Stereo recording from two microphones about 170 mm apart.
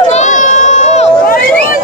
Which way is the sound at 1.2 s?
55° left (ahead or behind).